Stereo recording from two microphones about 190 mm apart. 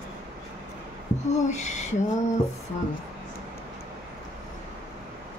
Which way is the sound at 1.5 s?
40° left (ahead or behind).